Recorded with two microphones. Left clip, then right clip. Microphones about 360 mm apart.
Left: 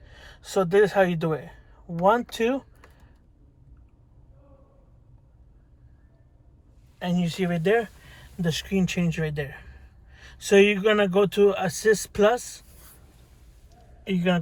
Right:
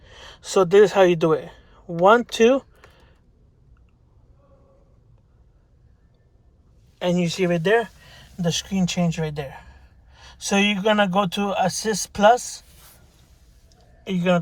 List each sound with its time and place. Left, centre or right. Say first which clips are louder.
0.0 s speech: right 6 dB; right
7.0 s a man's voice: right 7 dB; centre
14.0 s speech: right 4 dB; centre